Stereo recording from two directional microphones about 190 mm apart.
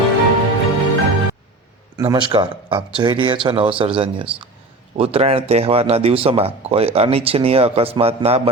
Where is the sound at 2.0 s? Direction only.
20° right (ahead or behind).